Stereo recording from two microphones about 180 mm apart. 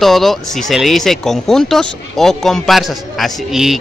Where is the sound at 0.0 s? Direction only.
Centre (ahead or behind).